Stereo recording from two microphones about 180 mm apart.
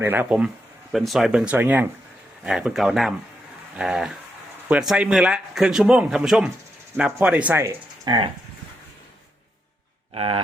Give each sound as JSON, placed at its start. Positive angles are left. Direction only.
{"t": 0.0, "sound": "speech", "side_deg": -10}
{"t": 8.1, "sound": "speech", "side_deg": -25}
{"t": 10.2, "sound": "a sound", "side_deg": -30}